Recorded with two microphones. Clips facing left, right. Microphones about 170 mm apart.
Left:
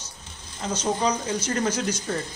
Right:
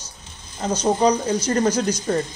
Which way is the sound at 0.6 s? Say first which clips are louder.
Right 6 dB; 40° right (ahead or behind).